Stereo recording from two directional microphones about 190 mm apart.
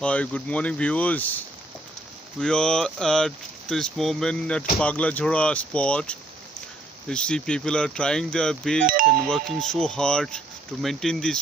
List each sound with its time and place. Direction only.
0.0 s speech: 5° left (ahead or behind)
2.4 s speech: 5° left (ahead or behind)
8.8 s speech: 45° right (ahead or behind)
9.2 s speech: 5° left (ahead or behind)